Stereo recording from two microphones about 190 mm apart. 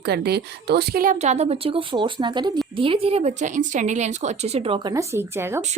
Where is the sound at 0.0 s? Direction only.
60° right (ahead or behind).